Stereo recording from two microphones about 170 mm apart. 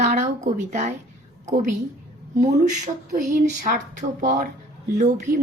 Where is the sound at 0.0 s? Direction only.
40° right (ahead or behind).